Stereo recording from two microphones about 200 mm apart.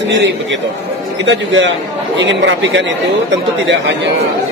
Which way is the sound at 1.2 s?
65° right (ahead or behind).